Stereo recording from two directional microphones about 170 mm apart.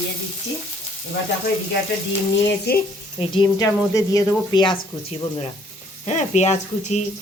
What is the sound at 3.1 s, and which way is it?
Speech, 30° left (ahead or behind).